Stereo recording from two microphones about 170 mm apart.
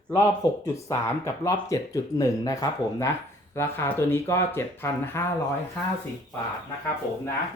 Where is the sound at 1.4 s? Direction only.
20° left (ahead or behind).